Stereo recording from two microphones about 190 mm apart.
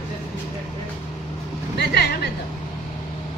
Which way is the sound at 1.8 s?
60° left (ahead or behind).